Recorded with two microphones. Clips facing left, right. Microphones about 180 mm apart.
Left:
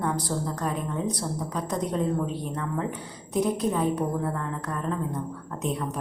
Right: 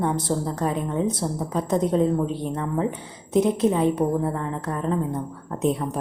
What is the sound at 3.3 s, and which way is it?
Speech, 25° right (ahead or behind).